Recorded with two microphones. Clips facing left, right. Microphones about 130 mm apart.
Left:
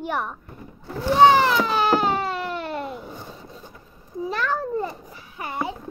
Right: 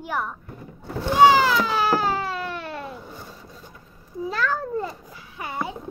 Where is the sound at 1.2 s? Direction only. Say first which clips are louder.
Even; 5° right (ahead or behind).